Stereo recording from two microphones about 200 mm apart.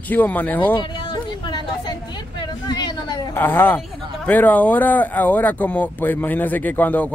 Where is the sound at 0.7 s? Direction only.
25° left (ahead or behind).